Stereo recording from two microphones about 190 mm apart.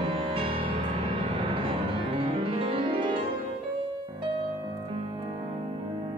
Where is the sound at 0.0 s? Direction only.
30° right (ahead or behind).